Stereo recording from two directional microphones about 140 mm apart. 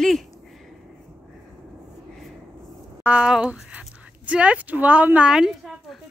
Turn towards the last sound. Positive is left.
turn(degrees=-5)  # may be behind; listen again after turning